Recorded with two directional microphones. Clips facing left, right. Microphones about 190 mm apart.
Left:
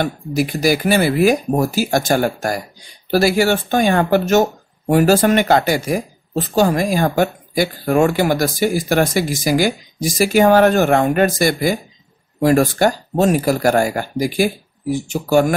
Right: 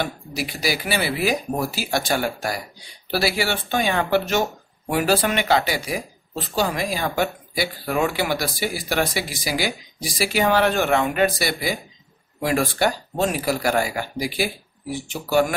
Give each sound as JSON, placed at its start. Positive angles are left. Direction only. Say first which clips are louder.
{"t": 0.0, "sound": "speech", "louder": "left 8 dB", "side_deg": 50}